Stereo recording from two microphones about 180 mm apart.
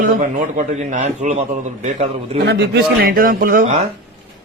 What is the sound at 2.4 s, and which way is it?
A man's voice, 70° right (ahead or behind).